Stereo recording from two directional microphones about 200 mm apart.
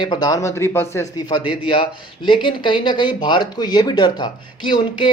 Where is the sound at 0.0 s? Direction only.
20° left (ahead or behind).